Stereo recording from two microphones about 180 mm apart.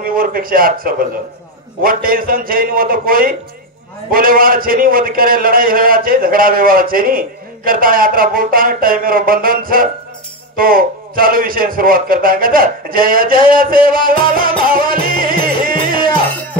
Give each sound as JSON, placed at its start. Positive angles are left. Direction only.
{"t": 0.0, "sound": "a man's voice", "side_deg": -55}
{"t": 14.6, "sound": "music", "side_deg": -50}
{"t": 16.1, "sound": "music", "side_deg": 10}